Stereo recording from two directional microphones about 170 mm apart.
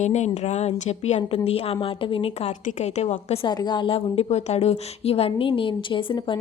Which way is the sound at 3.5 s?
25° left (ahead or behind).